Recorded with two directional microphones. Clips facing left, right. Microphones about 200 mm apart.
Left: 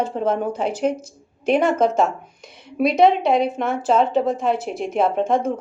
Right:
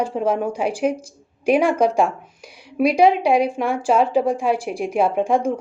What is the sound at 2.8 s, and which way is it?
A woman's voice, centre (ahead or behind).